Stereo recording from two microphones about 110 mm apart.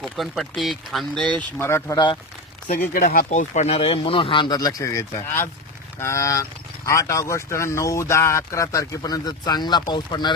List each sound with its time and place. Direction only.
0.0 s speech: centre (ahead or behind)
1.5 s speech: 25° left (ahead or behind)
3.2 s speech: 90° left; by 10.3 s 40° left (ahead or behind)